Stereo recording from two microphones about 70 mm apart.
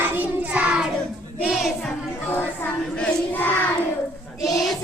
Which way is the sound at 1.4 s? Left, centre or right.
Centre.